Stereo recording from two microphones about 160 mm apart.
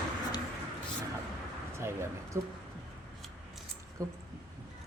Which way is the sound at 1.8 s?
20° right (ahead or behind).